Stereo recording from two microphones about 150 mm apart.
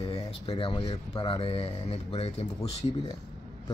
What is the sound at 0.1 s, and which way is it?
Speech, 35° left (ahead or behind).